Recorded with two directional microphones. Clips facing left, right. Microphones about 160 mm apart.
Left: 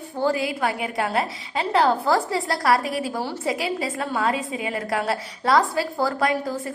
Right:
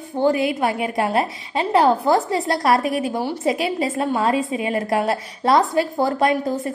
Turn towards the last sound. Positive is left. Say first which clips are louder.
# right 4 dB
turn(degrees=-25)  # may be behind; listen again after turning